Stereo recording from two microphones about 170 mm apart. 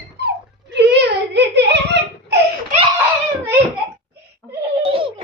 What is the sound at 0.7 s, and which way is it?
Giggle, 80° right.